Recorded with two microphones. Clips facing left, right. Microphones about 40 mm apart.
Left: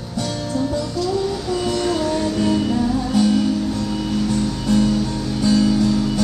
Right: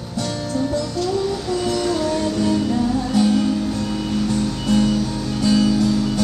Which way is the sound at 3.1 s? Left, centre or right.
Right.